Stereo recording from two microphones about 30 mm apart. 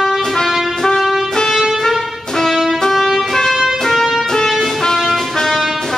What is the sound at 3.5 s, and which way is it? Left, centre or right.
Music, centre.